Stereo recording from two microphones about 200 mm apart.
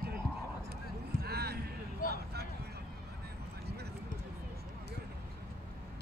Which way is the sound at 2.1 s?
55° right (ahead or behind).